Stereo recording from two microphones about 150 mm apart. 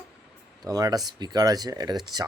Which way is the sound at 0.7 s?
25° right (ahead or behind).